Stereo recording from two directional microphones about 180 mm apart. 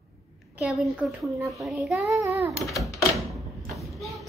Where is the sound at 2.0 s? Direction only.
15° right (ahead or behind).